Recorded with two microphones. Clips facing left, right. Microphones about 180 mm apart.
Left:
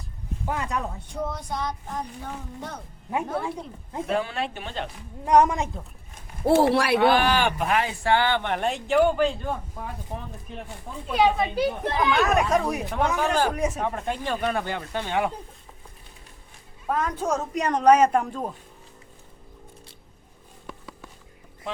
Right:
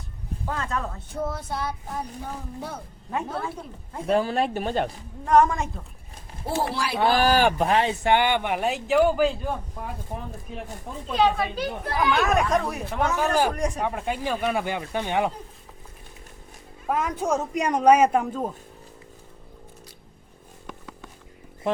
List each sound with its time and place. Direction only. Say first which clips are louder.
0.4 s speech: left 1 dB; 15° left (ahead or behind)
1.1 s speech: right 1 dB; 5° right (ahead or behind)
3.1 s speech: left 2 dB; 15° left (ahead or behind)
4.0 s speech: right 5 dB; 40° right (ahead or behind)
5.2 s speech: even; 15° left (ahead or behind)
6.4 s speech: left 8 dB; 70° left (ahead or behind)
7.0 s speech: right 1 dB; 35° right (ahead or behind); by 9.9 s 5° right (ahead or behind)
11.1 s speech: left 1 dB; 10° left (ahead or behind)
12.1 s speech: even; centre (ahead or behind)
13.1 s speech: right 2 dB; 10° right (ahead or behind)
13.5 s speech: even; 5° left (ahead or behind); by 15.3 s 15° right (ahead or behind)
16.8 s speech: right 1 dB; 5° right (ahead or behind)